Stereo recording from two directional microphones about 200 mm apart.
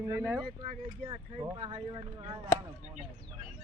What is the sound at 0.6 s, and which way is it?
Speech, 30° right (ahead or behind).